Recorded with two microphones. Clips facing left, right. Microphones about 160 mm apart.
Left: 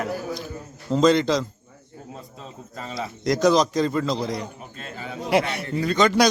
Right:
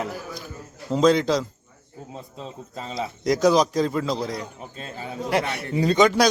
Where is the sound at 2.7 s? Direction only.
25° right (ahead or behind).